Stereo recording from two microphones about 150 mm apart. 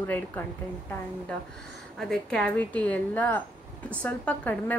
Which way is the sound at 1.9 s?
5° left (ahead or behind).